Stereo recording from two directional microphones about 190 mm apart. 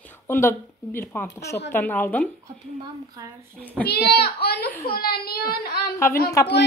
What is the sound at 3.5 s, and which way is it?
Speech, 10° left (ahead or behind).